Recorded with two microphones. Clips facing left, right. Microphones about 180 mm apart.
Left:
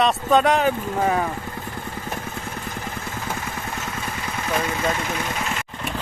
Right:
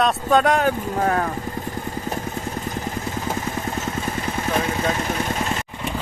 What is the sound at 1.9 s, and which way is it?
Vehicle, 40° right (ahead or behind).